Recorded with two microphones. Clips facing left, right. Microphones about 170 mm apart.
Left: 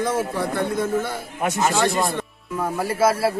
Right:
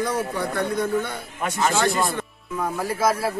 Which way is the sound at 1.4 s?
20° left (ahead or behind).